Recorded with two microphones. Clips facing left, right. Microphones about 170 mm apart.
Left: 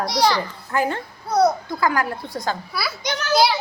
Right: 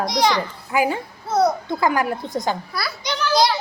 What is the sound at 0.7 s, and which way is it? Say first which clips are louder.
Speech: right 2 dB; 10° right (ahead or behind).